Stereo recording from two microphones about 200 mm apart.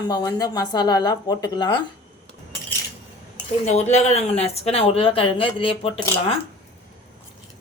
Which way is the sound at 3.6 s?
35° left (ahead or behind).